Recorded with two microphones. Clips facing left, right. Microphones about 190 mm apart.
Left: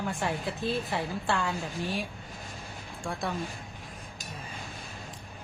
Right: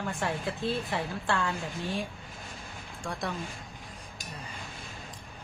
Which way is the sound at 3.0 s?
5° left (ahead or behind).